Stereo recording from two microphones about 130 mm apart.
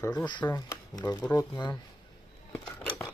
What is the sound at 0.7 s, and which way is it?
Speech, 30° left (ahead or behind).